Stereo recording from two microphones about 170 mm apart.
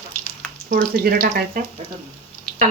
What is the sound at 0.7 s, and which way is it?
Speech, 55° right (ahead or behind).